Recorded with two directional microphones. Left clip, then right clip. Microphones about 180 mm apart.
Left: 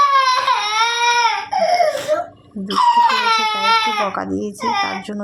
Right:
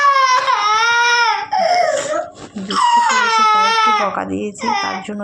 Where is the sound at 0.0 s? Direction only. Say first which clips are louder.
Right 1 dB; 15° left (ahead or behind).